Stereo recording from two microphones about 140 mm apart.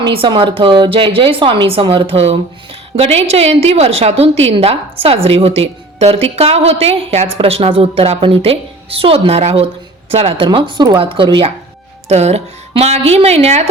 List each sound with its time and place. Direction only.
0.0 s a woman's voice: 35° right (ahead or behind)
12.0 s a woman's voice: 50° right (ahead or behind)